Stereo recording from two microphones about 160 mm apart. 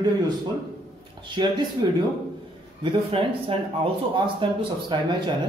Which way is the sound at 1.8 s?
25° right (ahead or behind).